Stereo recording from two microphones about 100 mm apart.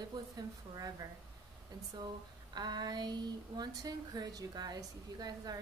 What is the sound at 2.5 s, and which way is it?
Speech, 45° right (ahead or behind).